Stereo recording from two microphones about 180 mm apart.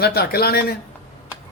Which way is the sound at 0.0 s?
60° left (ahead or behind).